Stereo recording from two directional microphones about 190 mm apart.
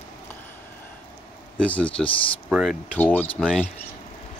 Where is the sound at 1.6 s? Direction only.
10° left (ahead or behind).